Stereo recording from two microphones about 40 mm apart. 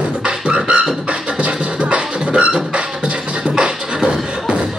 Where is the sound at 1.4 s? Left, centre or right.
Right.